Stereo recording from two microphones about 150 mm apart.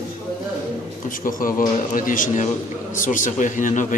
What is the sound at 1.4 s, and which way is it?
A man's voice, 65° left (ahead or behind).